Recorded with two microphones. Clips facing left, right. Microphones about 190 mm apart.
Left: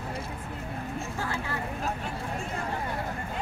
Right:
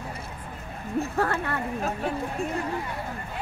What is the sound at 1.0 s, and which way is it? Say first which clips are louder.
Speech: right 7 dB; 65° right (ahead or behind).